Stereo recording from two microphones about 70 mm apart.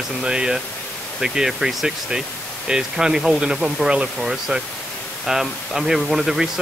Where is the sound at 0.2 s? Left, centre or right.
Centre.